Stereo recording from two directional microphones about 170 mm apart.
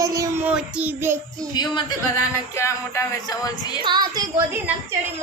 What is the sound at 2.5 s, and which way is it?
Speech, 15° left (ahead or behind).